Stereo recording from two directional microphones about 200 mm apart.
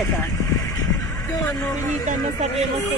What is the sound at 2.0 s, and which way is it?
Speech, 35° right (ahead or behind).